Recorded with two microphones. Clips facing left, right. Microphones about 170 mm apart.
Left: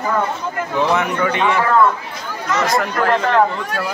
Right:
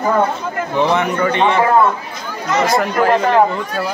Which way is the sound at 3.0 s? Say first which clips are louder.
Right 3 dB; 10° right (ahead or behind).